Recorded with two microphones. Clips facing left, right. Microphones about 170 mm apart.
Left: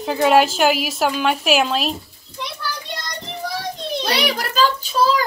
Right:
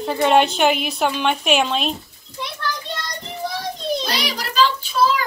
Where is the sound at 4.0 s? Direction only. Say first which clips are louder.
Left 4 dB; 60° left (ahead or behind); by 5.2 s 35° left (ahead or behind).